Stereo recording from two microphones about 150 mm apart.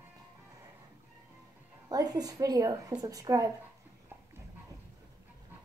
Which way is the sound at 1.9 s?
25° right (ahead or behind).